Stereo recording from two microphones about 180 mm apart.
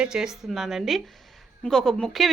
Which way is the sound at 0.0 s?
5° right (ahead or behind).